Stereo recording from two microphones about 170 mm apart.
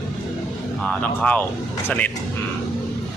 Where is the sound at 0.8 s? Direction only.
5° left (ahead or behind).